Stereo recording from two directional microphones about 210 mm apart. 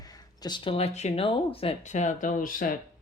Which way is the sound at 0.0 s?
20° left (ahead or behind).